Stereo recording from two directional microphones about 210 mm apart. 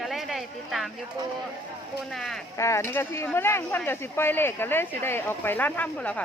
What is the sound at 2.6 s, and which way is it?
Speech, 15° left (ahead or behind).